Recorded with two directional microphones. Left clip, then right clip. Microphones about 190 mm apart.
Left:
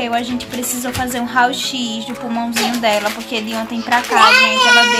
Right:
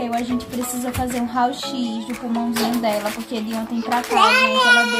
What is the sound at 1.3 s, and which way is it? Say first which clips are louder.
A child's voice: left 8 dB; centre (ahead or behind).